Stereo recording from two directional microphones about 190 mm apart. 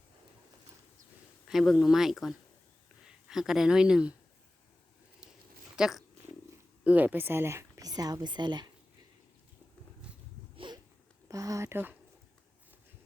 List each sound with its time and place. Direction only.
1.5 s speech: centre (ahead or behind)
5.7 s cat: centre (ahead or behind)
6.8 s speech: 10° right (ahead or behind)
10.6 s a sound: 25° right (ahead or behind)
11.3 s speech: 15° right (ahead or behind)